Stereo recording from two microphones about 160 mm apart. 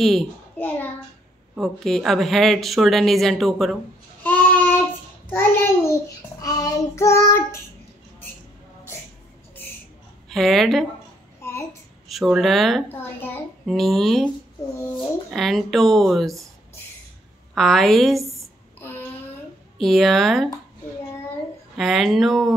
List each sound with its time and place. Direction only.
0.0 s a child's voice: centre (ahead or behind)
1.5 s speech: centre (ahead or behind)
4.2 s child singing: 10° left (ahead or behind)
5.3 s a child's voice: 10° left (ahead or behind)
6.4 s child singing: 25° left (ahead or behind)
10.3 s speech: centre (ahead or behind)
12.1 s speech: centre (ahead or behind)
12.8 s a child's voice: 15° left (ahead or behind)
13.7 s speech: centre (ahead or behind)
15.3 s speech: centre (ahead or behind)
17.6 s speech: centre (ahead or behind)
18.8 s child singing: 15° left (ahead or behind)
19.8 s speech: centre (ahead or behind)
21.7 s speech: centre (ahead or behind)